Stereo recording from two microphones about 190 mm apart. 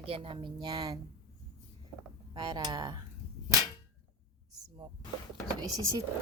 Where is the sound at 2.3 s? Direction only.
25° right (ahead or behind).